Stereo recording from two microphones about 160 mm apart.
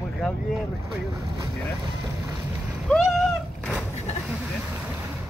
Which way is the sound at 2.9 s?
Centre (ahead or behind).